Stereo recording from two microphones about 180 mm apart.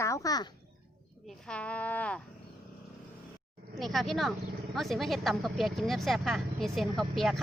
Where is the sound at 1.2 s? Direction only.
5° left (ahead or behind).